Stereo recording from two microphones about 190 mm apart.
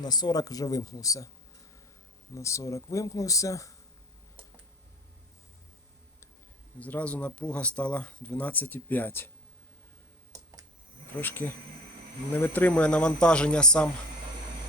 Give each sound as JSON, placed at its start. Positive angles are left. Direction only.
{"t": 0.0, "sound": "speech", "side_deg": 20}
{"t": 2.3, "sound": "speech", "side_deg": 15}
{"t": 6.7, "sound": "speech", "side_deg": 5}
{"t": 10.3, "sound": "computer keyboard", "side_deg": -20}
{"t": 11.2, "sound": "speech", "side_deg": 10}